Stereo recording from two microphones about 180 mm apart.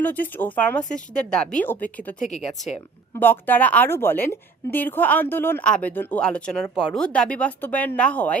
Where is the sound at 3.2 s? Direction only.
10° left (ahead or behind).